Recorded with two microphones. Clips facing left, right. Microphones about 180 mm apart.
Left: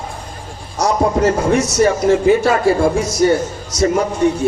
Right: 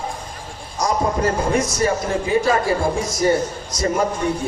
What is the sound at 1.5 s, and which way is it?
Speech, 75° left (ahead or behind).